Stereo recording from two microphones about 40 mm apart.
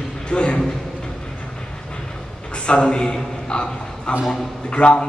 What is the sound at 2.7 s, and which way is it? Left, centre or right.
A man's voice, left.